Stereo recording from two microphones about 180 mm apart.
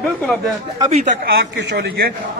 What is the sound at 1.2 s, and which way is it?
Speech, 65° right (ahead or behind).